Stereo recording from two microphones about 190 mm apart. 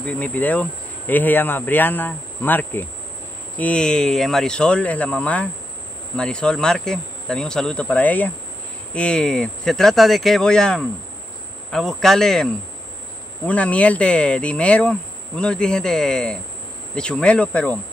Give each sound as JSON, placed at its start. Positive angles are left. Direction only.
{"t": 0.0, "sound": "speech", "side_deg": 10}
{"t": 3.5, "sound": "insect", "side_deg": 5}
{"t": 13.5, "sound": "insect", "side_deg": 5}
{"t": 16.9, "sound": "speech", "side_deg": 5}